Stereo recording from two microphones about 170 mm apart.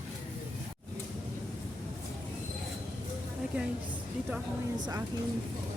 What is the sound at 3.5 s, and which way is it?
Speech, 10° right (ahead or behind).